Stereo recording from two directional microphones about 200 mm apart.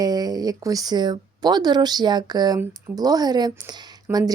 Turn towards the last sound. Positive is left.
turn(degrees=-20)  # may be behind; listen again after turning